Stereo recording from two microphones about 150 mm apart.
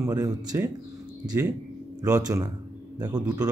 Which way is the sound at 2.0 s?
25° right (ahead or behind).